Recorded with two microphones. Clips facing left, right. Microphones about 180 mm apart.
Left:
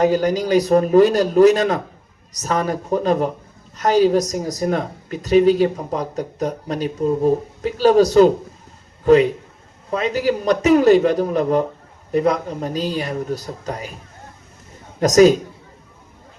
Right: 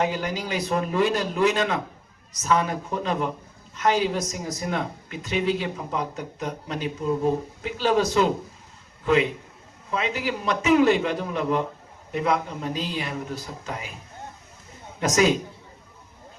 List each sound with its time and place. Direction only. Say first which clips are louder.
0.0 s speech: left 9 dB; 40° left (ahead or behind)
15.0 s speech: left 9 dB; 40° left (ahead or behind)